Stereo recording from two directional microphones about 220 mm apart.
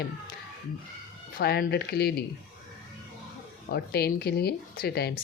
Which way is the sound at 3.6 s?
45° left (ahead or behind).